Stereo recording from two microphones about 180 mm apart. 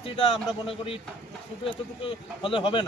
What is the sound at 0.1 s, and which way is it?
A man's voice, 30° left (ahead or behind).